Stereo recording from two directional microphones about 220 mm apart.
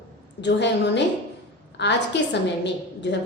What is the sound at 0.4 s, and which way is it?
A woman's voice, 50° left (ahead or behind).